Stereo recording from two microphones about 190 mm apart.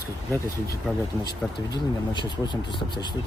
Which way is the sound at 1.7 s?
20° left (ahead or behind).